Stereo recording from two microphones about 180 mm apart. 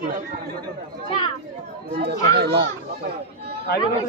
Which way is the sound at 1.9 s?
65° right (ahead or behind).